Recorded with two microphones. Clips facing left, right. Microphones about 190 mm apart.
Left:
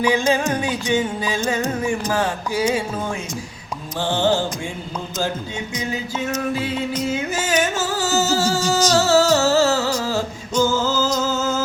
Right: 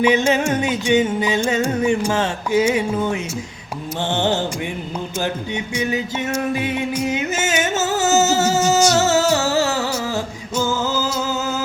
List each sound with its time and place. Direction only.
0.0 s music: 20° right (ahead or behind)
5.9 s music: 20° right (ahead or behind)